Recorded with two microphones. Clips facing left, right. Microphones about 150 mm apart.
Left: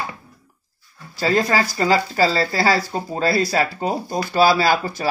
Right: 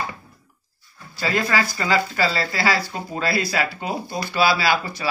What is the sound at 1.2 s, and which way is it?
Speech, 35° left (ahead or behind).